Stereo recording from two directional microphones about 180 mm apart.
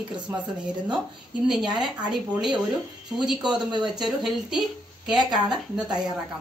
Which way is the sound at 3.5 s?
25° right (ahead or behind).